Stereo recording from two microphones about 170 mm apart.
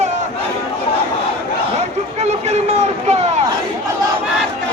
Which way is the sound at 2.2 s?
40° right (ahead or behind).